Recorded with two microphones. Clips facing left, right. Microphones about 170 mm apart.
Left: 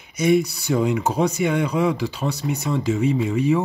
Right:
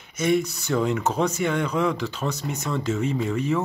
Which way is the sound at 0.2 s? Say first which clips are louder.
Left 4 dB; 10° left (ahead or behind).